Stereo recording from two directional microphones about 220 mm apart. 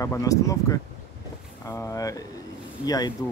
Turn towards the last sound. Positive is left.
turn(degrees=15)  # may be behind; listen again after turning